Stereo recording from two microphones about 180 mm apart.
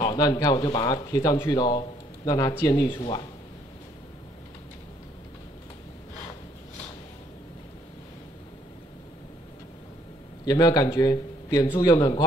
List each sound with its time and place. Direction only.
0.0 s speech: 25° left (ahead or behind)
10.4 s speech: 20° left (ahead or behind)